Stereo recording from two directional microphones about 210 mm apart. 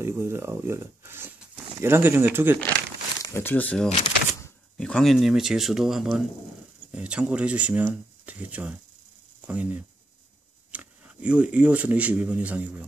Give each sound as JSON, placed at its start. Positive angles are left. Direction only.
{"t": 0.0, "sound": "speech", "side_deg": -10}
{"t": 3.2, "sound": "speech", "side_deg": 10}